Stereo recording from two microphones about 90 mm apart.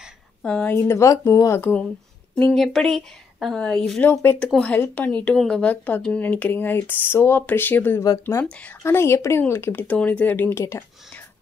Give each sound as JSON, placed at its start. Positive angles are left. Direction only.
{"t": 0.4, "sound": "a woman's voice", "side_deg": 10}
{"t": 0.7, "sound": "speech", "side_deg": 30}
{"t": 2.5, "sound": "a woman's voice", "side_deg": 5}
{"t": 4.1, "sound": "speech", "side_deg": 30}
{"t": 4.4, "sound": "a woman's voice", "side_deg": 10}
{"t": 8.0, "sound": "speech", "side_deg": 40}